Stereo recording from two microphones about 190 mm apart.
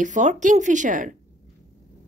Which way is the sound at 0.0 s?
40° right (ahead or behind).